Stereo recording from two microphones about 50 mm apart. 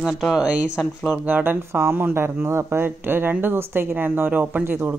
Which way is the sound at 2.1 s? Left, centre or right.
Right.